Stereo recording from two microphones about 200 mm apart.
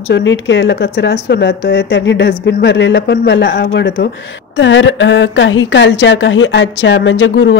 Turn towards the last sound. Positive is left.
turn(degrees=65)  # may be behind; listen again after turning